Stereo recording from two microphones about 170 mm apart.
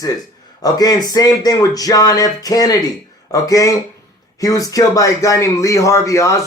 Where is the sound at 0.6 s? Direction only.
20° left (ahead or behind).